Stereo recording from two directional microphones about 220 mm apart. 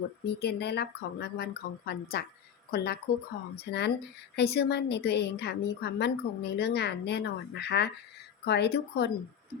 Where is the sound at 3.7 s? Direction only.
50° left (ahead or behind).